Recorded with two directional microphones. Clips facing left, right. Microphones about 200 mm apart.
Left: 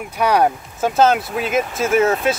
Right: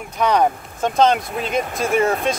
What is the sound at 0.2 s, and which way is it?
Speech, 10° left (ahead or behind).